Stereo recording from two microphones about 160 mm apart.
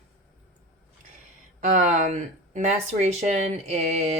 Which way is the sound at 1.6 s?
50° right (ahead or behind).